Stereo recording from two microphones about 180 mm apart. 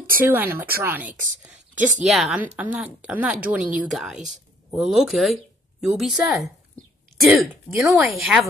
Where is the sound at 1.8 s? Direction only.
45° right (ahead or behind).